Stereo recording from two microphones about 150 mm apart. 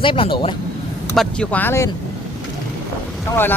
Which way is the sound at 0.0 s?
35° left (ahead or behind).